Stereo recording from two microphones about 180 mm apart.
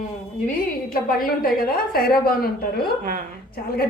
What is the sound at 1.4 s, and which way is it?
A woman's voice, 55° left (ahead or behind).